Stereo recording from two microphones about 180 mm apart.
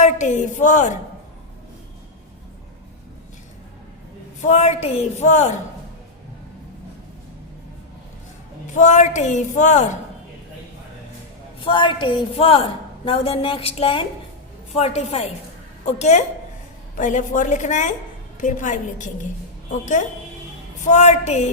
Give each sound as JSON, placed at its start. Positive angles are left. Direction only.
{"t": 0.0, "sound": "a woman's voice", "side_deg": 40}
{"t": 4.4, "sound": "a woman's voice", "side_deg": 40}
{"t": 8.7, "sound": "a woman's voice", "side_deg": 45}
{"t": 11.6, "sound": "a woman's voice", "side_deg": 25}